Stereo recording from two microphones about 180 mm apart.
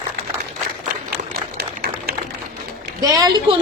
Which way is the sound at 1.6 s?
60° right (ahead or behind).